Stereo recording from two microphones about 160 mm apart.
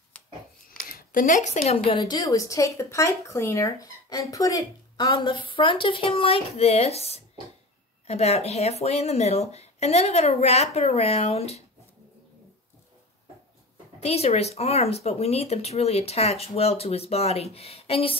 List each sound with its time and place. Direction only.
0.8 s a woman's voice: 60° left (ahead or behind); by 2.0 s 40° left (ahead or behind)
2.0 s speech: 25° left (ahead or behind); by 11.6 s 40° left (ahead or behind)
14.0 s speech: 40° left (ahead or behind)